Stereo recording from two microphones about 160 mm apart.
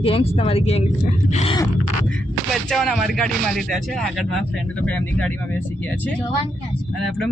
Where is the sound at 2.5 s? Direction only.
5° left (ahead or behind).